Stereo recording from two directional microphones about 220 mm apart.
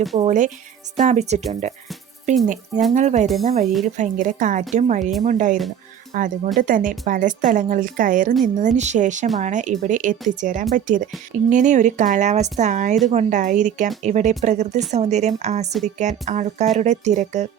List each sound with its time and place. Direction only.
0.2 s speech: 35° right (ahead or behind)